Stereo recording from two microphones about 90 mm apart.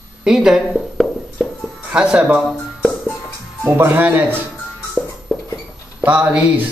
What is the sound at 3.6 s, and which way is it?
Speech, 25° right (ahead or behind).